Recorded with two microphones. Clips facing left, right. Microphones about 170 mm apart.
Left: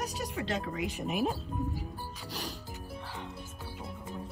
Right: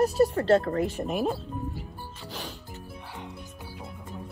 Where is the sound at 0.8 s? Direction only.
40° right (ahead or behind).